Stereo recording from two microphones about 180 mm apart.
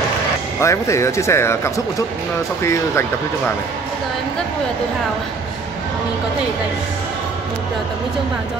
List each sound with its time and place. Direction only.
0.6 s speech: 15° left (ahead or behind)